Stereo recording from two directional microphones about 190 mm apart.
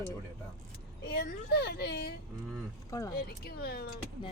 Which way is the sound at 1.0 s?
60° left (ahead or behind).